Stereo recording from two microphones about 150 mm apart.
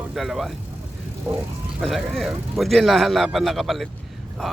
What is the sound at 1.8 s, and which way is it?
A man's voice, centre (ahead or behind).